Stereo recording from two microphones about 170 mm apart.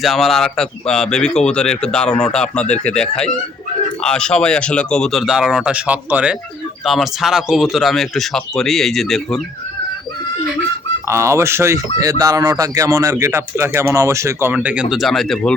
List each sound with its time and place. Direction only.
0.0 s speech: centre (ahead or behind)
11.1 s a man's voice: 15° right (ahead or behind); by 15.5 s 5° left (ahead or behind)